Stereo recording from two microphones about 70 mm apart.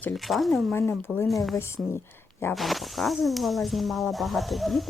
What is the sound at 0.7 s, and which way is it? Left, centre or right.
Speech, left.